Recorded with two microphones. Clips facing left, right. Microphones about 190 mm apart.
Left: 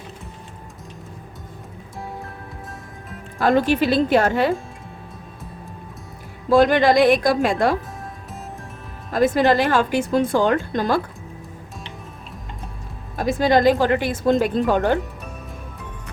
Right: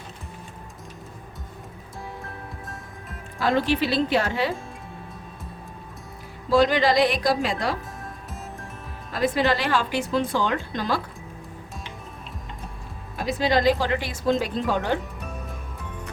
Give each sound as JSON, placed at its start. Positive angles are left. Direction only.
{"t": 3.3, "sound": "speech", "side_deg": 50}
{"t": 6.5, "sound": "speech", "side_deg": 50}
{"t": 9.1, "sound": "speech", "side_deg": 45}
{"t": 13.1, "sound": "speech", "side_deg": 45}